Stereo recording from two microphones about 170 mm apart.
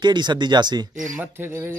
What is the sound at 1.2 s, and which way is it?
Speech, 10° right (ahead or behind).